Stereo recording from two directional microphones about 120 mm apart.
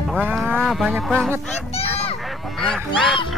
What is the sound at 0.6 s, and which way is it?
Speech, centre (ahead or behind).